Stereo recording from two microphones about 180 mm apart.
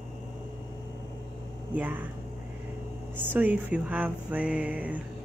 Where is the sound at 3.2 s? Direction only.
10° right (ahead or behind).